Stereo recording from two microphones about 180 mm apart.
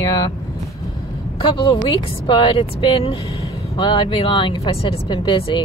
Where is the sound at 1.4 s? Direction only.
25° left (ahead or behind).